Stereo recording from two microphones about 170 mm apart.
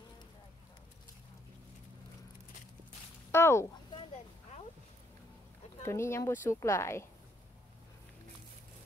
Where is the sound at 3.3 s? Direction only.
15° left (ahead or behind).